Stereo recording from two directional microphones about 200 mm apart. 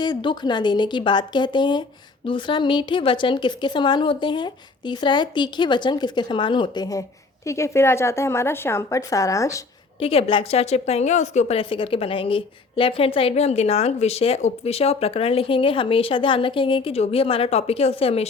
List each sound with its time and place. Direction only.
0.0 s a woman's voice: 20° left (ahead or behind)
10.0 s a woman's voice: 30° left (ahead or behind)